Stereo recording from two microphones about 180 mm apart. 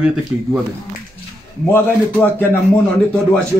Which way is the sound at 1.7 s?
10° left (ahead or behind).